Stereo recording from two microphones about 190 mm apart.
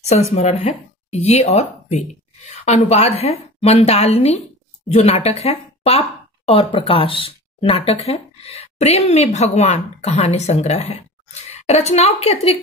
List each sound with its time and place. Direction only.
0.0 s a woman's voice: 35° left (ahead or behind)